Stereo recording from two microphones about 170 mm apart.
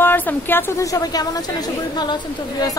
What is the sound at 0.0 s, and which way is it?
A woman's voice, 10° left (ahead or behind).